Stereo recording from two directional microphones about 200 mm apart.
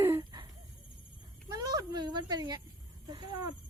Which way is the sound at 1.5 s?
20° right (ahead or behind).